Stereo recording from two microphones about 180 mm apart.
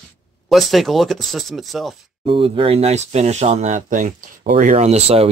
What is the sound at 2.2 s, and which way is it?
Speech, 30° right (ahead or behind).